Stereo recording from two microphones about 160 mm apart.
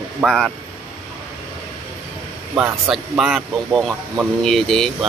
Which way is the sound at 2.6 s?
Centre (ahead or behind).